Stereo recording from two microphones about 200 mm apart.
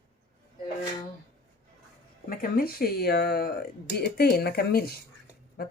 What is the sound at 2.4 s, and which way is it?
Speech, 50° left (ahead or behind).